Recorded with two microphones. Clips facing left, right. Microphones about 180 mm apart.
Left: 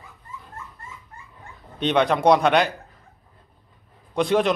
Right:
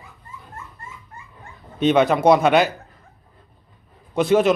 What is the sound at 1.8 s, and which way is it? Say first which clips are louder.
Speech: right 3 dB; 5° right (ahead or behind).